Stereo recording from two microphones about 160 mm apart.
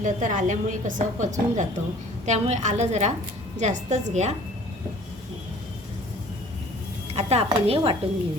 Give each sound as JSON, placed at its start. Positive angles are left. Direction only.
{"t": 0.0, "sound": "a woman's voice", "side_deg": -50}
{"t": 7.2, "sound": "a woman's voice", "side_deg": -40}